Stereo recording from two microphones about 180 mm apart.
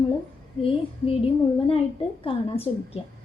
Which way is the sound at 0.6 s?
30° left (ahead or behind).